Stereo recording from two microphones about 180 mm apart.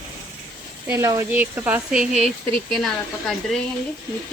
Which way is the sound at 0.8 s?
15° right (ahead or behind).